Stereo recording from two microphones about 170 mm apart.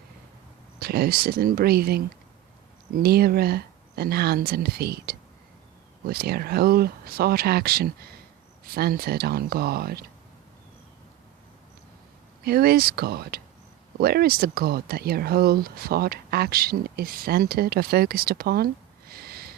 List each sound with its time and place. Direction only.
0.8 s speech: 65° right (ahead or behind)
12.4 s speech: 65° right (ahead or behind)